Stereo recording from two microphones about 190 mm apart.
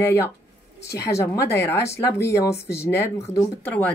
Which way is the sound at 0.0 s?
10° left (ahead or behind).